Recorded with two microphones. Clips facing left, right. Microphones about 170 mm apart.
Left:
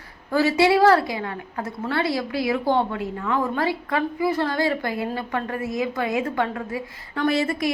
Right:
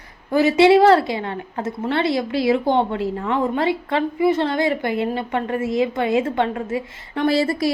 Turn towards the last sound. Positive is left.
turn(degrees=-35)  # may be behind; listen again after turning